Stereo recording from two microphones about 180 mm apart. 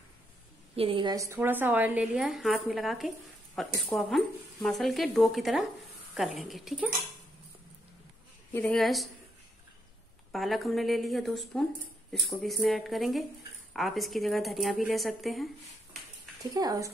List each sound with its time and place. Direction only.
0.7 s speech: 30° right (ahead or behind)
1.1 s a woman's voice: 15° right (ahead or behind)
8.5 s speech: 5° left (ahead or behind)
10.3 s speech: centre (ahead or behind)
16.5 s speech: 20° right (ahead or behind)